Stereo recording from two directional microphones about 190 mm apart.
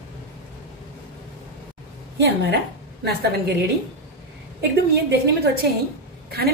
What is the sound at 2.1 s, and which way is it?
A woman's voice, 60° right (ahead or behind).